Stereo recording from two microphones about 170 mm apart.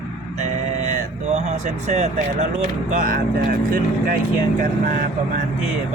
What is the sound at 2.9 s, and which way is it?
Speech, 55° right (ahead or behind).